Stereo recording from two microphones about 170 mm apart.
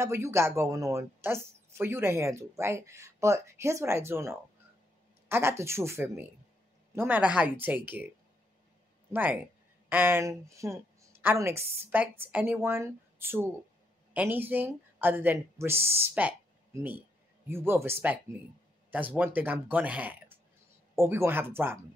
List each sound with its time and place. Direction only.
0.0 s a woman's voice: 15° right (ahead or behind)
9.1 s a woman's voice: 10° right (ahead or behind)